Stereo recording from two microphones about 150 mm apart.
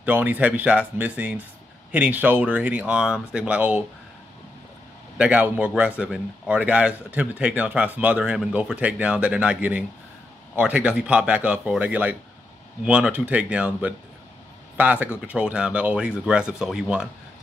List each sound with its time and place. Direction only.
0.0 s a man's voice: 10° right (ahead or behind)
5.1 s a man's voice: 10° right (ahead or behind)